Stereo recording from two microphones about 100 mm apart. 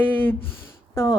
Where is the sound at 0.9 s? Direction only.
30° left (ahead or behind).